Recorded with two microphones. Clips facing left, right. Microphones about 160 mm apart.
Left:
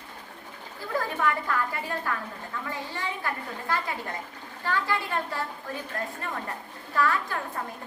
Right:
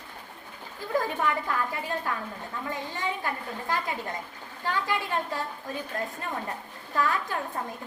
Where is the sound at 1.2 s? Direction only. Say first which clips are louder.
Left 1 dB; 20° right (ahead or behind).